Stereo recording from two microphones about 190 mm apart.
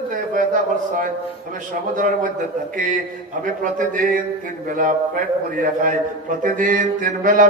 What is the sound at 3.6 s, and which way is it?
A man's voice, 45° right (ahead or behind).